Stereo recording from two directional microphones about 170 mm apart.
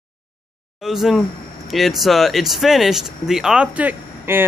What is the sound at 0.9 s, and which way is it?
Speech, centre (ahead or behind).